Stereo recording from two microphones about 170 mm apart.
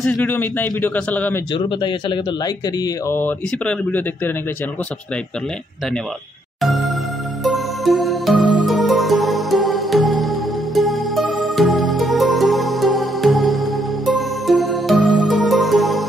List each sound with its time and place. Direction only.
0.0 s speech: 5° left (ahead or behind)
1.5 s speech: 30° left (ahead or behind)
3.2 s speech: 10° left (ahead or behind)
6.6 s music: centre (ahead or behind)